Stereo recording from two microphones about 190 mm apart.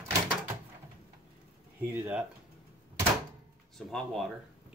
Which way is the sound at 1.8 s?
10° right (ahead or behind).